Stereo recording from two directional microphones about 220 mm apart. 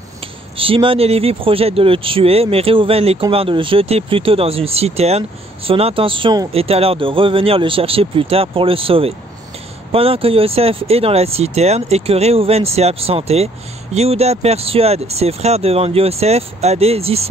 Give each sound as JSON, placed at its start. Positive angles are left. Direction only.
{"t": 0.6, "sound": "speech", "side_deg": -25}